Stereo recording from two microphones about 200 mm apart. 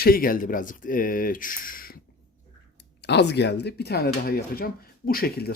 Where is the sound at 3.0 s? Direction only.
60° left (ahead or behind).